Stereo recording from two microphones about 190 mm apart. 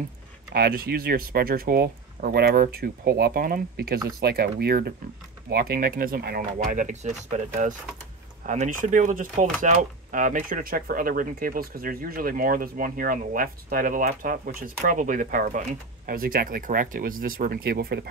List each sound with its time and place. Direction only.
0.5 s speech: 50° right (ahead or behind)